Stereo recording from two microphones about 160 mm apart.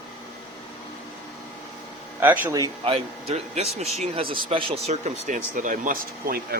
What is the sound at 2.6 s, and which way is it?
Speech, 35° right (ahead or behind).